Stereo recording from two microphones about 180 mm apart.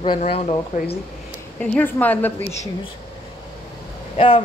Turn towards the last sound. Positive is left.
turn(degrees=30)  # may be behind; listen again after turning